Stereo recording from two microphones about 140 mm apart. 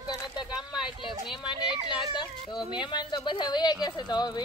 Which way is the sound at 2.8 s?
30° left (ahead or behind).